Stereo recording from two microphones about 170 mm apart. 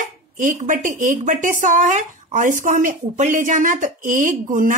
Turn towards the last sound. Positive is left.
turn(degrees=-50)  # may be behind; listen again after turning